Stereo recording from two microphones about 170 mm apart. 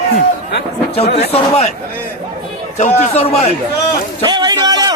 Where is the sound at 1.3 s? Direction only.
35° left (ahead or behind).